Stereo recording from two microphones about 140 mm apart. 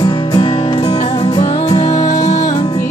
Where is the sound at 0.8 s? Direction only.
45° left (ahead or behind).